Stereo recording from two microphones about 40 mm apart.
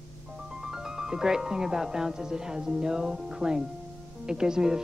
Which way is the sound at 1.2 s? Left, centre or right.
Centre.